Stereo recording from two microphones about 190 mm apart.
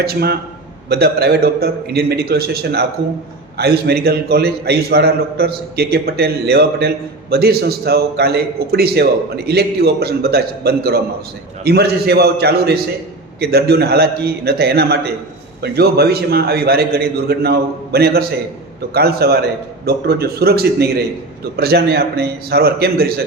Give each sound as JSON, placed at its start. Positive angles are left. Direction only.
{"t": 0.0, "sound": "a man's voice", "side_deg": -55}